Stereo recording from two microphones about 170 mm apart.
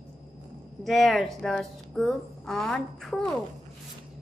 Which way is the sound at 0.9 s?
Centre (ahead or behind).